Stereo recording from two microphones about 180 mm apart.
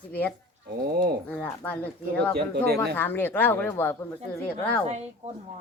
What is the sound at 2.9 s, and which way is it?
Speech, 10° left (ahead or behind).